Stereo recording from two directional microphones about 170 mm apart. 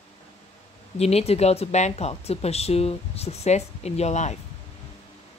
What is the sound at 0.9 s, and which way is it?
Speech, 40° left (ahead or behind).